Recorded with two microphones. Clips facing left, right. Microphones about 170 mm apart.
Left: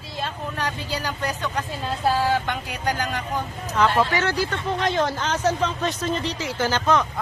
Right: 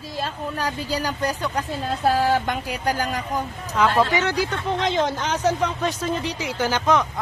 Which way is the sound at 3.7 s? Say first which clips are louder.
Right 1 dB; 10° right (ahead or behind).